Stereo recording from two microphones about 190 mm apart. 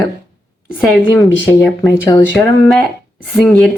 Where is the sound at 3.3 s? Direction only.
Centre (ahead or behind).